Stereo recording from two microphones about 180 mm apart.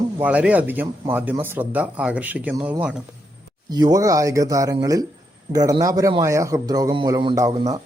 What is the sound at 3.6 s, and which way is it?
A man's voice, 25° right (ahead or behind).